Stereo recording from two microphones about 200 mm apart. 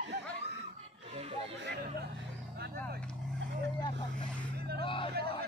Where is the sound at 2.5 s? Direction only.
55° right (ahead or behind).